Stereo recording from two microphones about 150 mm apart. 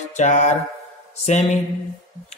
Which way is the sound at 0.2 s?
55° left (ahead or behind).